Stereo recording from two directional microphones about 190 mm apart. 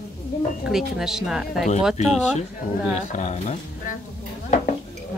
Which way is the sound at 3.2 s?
35° left (ahead or behind).